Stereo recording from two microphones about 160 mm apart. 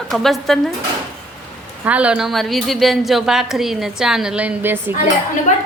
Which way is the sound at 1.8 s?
10° right (ahead or behind).